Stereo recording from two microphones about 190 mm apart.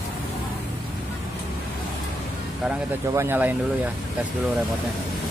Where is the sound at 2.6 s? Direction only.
15° right (ahead or behind).